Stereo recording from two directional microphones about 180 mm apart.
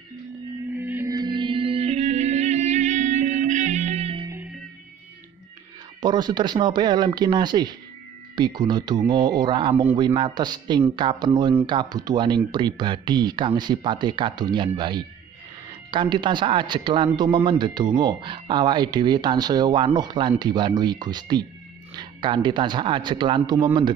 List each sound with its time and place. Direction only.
0.7 s music: 10° right (ahead or behind); by 4.3 s 30° right (ahead or behind)
5.9 s speech: 25° right (ahead or behind)